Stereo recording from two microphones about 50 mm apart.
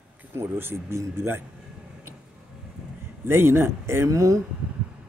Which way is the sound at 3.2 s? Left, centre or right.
Right.